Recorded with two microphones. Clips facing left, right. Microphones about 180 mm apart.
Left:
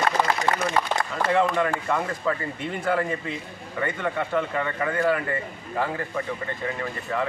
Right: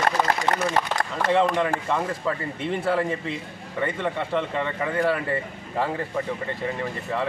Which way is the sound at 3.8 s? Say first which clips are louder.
Right 1 dB; 25° right (ahead or behind).